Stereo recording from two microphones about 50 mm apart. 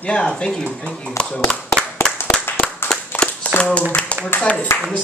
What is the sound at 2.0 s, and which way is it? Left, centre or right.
Clapping, left.